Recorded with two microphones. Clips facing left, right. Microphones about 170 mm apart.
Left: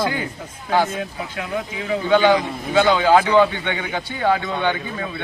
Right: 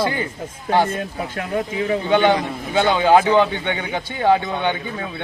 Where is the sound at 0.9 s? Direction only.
50° right (ahead or behind).